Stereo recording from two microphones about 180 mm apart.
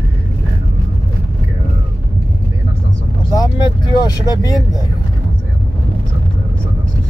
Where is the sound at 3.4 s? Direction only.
20° left (ahead or behind).